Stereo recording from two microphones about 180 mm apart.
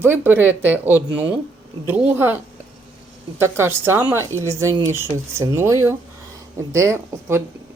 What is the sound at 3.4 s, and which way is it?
Speech, 15° right (ahead or behind).